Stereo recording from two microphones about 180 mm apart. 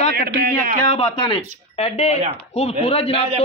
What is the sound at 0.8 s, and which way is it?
Speech, 30° left (ahead or behind).